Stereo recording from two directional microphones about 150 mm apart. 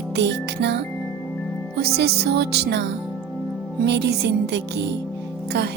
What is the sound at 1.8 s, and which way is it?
Music, 90° right.